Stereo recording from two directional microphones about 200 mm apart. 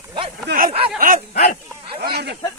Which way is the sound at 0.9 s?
45° right (ahead or behind).